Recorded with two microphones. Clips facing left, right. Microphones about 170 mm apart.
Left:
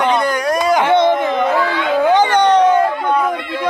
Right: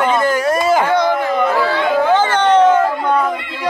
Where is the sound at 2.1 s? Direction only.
15° left (ahead or behind).